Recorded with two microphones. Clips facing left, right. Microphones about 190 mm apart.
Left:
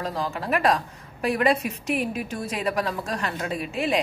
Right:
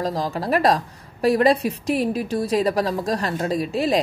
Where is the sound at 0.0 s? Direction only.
35° right (ahead or behind).